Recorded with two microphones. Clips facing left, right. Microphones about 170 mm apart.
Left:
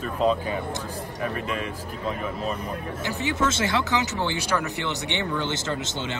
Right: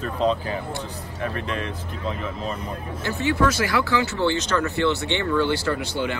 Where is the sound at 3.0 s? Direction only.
15° left (ahead or behind).